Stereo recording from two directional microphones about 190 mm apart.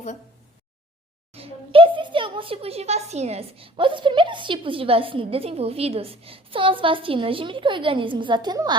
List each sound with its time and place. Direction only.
1.3 s a child's voice: 30° right (ahead or behind)